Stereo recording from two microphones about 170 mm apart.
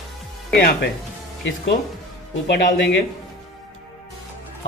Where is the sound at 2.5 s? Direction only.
55° left (ahead or behind).